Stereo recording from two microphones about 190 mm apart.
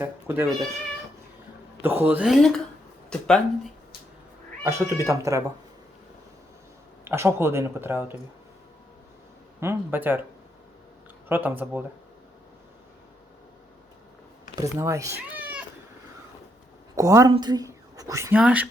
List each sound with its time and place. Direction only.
0.0 s speech: 10° right (ahead or behind)
1.8 s speech: 10° right (ahead or behind); by 3.4 s 5° left (ahead or behind)
4.6 s speech: 15° right (ahead or behind)
7.0 s speech: 15° right (ahead or behind)
9.6 s speech: 10° right (ahead or behind)
11.3 s speech: 10° right (ahead or behind)
14.5 s speech: 15° right (ahead or behind)
17.0 s speech: 15° right (ahead or behind)